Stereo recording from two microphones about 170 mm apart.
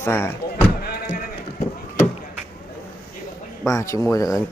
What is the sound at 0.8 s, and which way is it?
Sheep, 65° left (ahead or behind).